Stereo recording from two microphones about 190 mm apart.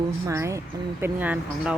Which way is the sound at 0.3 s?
15° right (ahead or behind).